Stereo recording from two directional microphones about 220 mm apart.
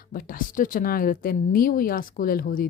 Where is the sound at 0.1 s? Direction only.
40° left (ahead or behind).